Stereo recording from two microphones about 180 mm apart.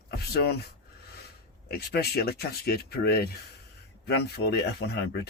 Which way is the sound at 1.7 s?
60° left (ahead or behind).